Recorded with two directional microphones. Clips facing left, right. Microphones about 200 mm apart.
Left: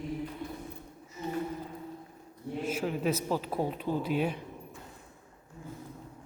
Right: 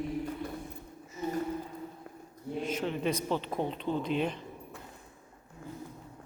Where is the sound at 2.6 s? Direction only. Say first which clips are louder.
Left 2 dB; 5° left (ahead or behind).